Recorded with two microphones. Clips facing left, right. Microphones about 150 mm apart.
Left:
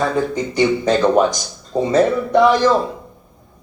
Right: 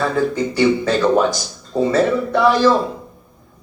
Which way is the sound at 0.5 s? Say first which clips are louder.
Left 2 dB; 20° left (ahead or behind).